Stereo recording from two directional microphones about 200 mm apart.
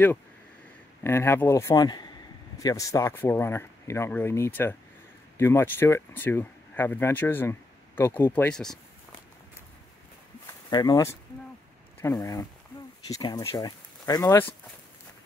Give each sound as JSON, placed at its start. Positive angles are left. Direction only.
{"t": 1.0, "sound": "speech", "side_deg": 10}
{"t": 10.4, "sound": "a sound", "side_deg": 20}
{"t": 12.0, "sound": "speech", "side_deg": 15}